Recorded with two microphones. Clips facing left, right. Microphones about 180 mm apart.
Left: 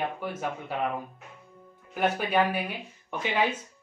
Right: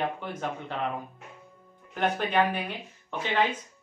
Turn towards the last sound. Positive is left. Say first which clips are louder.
# even
turn(degrees=10)  # may be behind; listen again after turning